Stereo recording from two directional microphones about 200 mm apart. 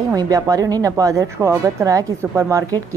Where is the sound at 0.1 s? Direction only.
20° right (ahead or behind).